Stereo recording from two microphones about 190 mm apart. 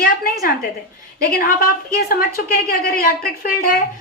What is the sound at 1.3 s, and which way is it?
A woman's voice, 50° left (ahead or behind).